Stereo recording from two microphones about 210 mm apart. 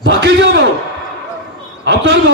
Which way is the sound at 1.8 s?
60° right (ahead or behind).